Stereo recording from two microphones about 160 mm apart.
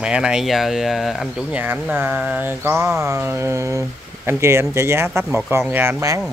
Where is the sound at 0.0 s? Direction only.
5° right (ahead or behind).